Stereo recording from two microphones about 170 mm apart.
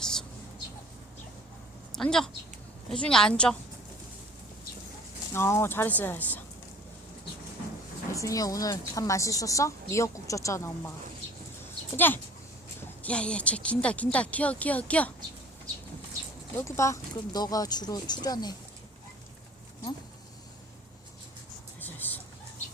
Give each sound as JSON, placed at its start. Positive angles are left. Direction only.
{"t": 0.0, "sound": "bird", "side_deg": 5}
{"t": 1.9, "sound": "a woman's voice", "side_deg": 5}
{"t": 5.3, "sound": "speech", "side_deg": 15}
{"t": 8.1, "sound": "a woman's voice", "side_deg": 20}
{"t": 11.9, "sound": "speech", "side_deg": 10}
{"t": 16.6, "sound": "a woman's voice", "side_deg": 15}
{"t": 21.8, "sound": "vehicle", "side_deg": 10}